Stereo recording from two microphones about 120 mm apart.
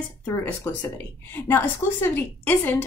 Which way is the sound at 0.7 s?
20° left (ahead or behind).